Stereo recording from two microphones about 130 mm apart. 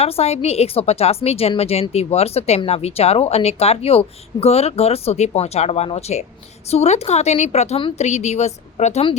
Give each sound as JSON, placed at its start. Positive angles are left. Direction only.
{"t": 0.0, "sound": "speech", "side_deg": 50}